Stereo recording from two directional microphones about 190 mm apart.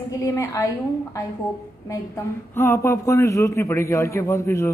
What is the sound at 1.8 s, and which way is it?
A man's voice, 15° left (ahead or behind).